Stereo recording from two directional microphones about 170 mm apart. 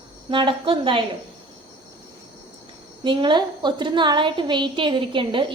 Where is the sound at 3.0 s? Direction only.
25° right (ahead or behind).